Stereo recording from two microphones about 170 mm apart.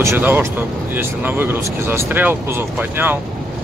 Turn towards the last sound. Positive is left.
turn(degrees=-10)  # may be behind; listen again after turning